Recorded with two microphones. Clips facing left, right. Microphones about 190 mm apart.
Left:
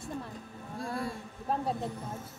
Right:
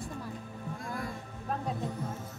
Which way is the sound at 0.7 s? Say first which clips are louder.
Left 5 dB; 30° left (ahead or behind).